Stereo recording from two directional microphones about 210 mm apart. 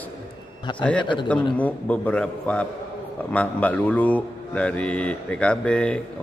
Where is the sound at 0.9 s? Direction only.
20° left (ahead or behind).